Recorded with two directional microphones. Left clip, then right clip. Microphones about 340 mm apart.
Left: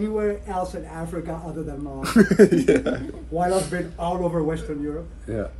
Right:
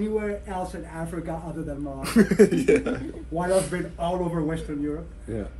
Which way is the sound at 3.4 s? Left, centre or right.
Centre.